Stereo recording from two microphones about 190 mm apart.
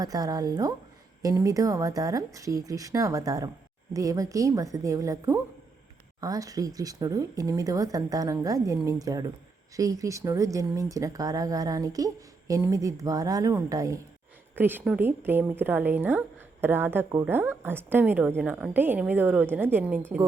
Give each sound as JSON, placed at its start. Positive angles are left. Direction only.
{"t": 0.0, "sound": "a woman's voice", "side_deg": -20}